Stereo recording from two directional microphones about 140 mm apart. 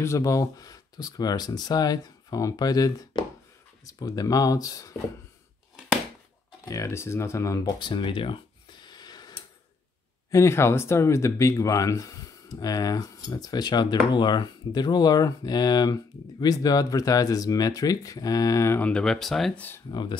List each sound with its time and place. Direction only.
0.0 s speech: 20° left (ahead or behind)
6.6 s speech: 25° left (ahead or behind)
10.3 s speech: 20° left (ahead or behind)
19.9 s speech: 30° left (ahead or behind)